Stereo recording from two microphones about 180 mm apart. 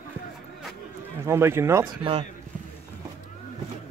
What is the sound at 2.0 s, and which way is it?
Speech, 30° right (ahead or behind).